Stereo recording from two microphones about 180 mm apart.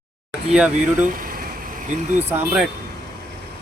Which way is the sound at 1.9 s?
40° right (ahead or behind).